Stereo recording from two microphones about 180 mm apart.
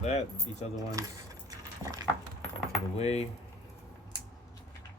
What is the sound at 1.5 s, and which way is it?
Keys jangling, 20° right (ahead or behind).